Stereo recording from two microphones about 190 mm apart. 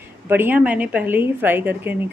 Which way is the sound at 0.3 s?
10° right (ahead or behind).